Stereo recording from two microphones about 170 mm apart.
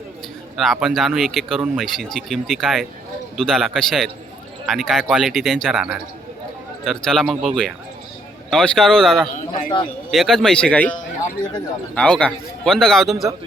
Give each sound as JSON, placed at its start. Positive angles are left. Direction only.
{"t": 0.5, "sound": "speech", "side_deg": 0}
{"t": 9.5, "sound": "a man's voice", "side_deg": 30}
{"t": 10.1, "sound": "speech", "side_deg": 0}
{"t": 11.9, "sound": "speech", "side_deg": 5}